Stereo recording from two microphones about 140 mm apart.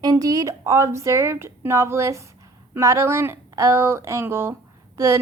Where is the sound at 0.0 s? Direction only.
25° right (ahead or behind).